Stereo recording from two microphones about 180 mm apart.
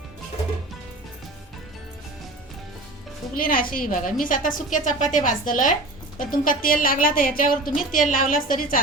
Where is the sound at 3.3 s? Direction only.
50° left (ahead or behind).